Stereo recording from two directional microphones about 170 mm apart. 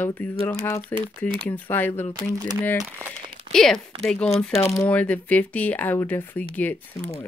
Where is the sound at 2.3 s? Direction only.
25° right (ahead or behind).